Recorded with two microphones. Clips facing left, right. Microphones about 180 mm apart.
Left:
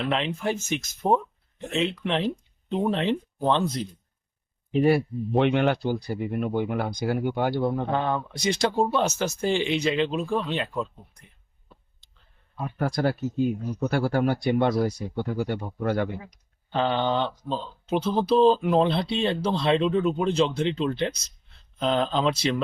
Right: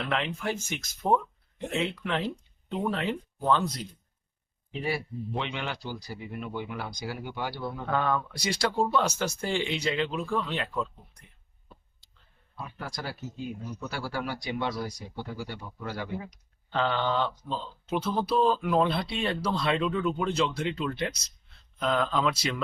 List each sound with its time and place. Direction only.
0.1 s speech: 20° left (ahead or behind)
4.7 s speech: 55° left (ahead or behind)
7.9 s speech: 25° left (ahead or behind)
12.5 s speech: 50° left (ahead or behind)
16.7 s speech: 20° left (ahead or behind)